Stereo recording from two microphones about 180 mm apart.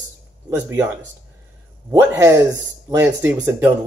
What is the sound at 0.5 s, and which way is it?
Speech, 15° right (ahead or behind).